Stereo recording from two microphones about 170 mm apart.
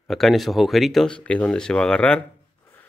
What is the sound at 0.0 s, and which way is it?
Speech, centre (ahead or behind).